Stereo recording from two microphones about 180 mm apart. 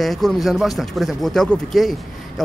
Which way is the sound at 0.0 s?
Centre (ahead or behind).